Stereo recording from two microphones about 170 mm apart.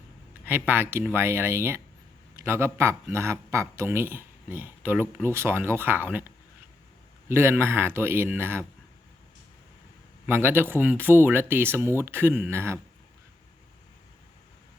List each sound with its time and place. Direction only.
0.4 s speech: 10° right (ahead or behind)
7.3 s speech: 15° right (ahead or behind)
10.2 s speech: 10° right (ahead or behind)